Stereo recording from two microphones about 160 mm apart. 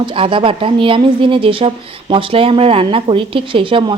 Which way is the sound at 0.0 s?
35° right (ahead or behind).